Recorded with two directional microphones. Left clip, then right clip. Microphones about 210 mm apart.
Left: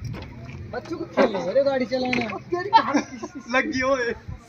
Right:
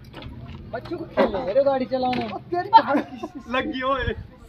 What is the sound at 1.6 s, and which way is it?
Speech, 50° left (ahead or behind).